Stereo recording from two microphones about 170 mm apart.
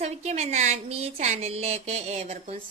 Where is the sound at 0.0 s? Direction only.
40° right (ahead or behind).